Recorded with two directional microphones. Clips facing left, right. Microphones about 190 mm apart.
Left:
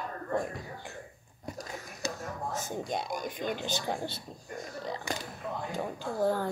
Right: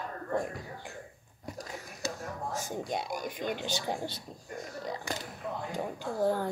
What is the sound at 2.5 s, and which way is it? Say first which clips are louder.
Speech: even; 10° right (ahead or behind).